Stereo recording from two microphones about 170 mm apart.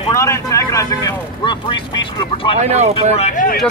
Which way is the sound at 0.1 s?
15° left (ahead or behind).